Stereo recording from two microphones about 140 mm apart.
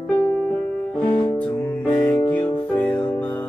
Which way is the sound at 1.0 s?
10° left (ahead or behind).